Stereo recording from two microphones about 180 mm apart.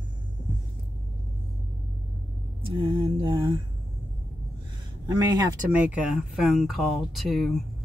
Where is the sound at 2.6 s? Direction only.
30° right (ahead or behind).